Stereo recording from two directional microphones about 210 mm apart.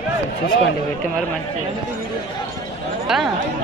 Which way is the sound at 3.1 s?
Centre (ahead or behind).